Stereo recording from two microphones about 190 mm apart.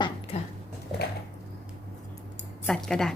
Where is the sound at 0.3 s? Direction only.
30° left (ahead or behind).